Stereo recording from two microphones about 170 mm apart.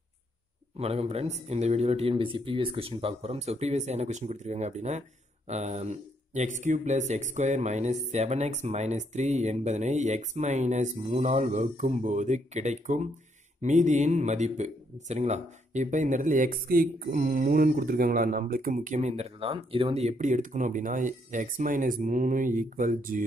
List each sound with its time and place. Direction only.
0.7 s a man's voice: 35° right (ahead or behind)